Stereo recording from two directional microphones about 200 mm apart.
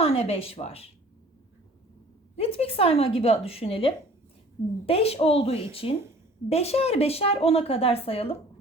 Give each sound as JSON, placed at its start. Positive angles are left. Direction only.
{"t": 0.0, "sound": "speech", "side_deg": 30}
{"t": 2.3, "sound": "a woman's voice", "side_deg": 30}